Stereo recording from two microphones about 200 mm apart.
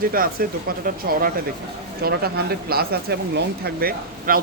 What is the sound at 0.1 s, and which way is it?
Speech, 45° right (ahead or behind).